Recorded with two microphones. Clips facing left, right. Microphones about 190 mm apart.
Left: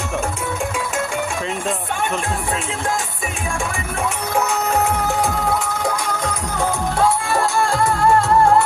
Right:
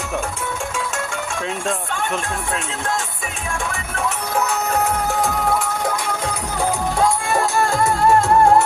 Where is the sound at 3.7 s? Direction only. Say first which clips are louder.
Left 1 dB; 10° left (ahead or behind).